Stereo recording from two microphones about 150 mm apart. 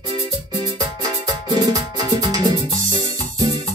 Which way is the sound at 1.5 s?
25° right (ahead or behind).